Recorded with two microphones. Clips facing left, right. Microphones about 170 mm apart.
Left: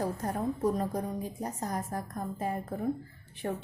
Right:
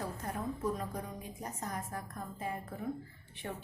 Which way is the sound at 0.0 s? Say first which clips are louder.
Left 7 dB; 40° left (ahead or behind).